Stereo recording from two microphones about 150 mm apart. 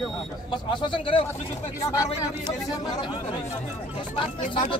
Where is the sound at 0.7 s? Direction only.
35° left (ahead or behind).